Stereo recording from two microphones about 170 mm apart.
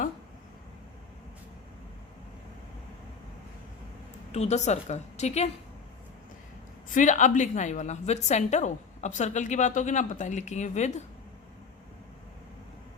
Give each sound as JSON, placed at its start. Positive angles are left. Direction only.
{"t": 4.3, "sound": "a woman's voice", "side_deg": 40}
{"t": 6.9, "sound": "a woman's voice", "side_deg": 45}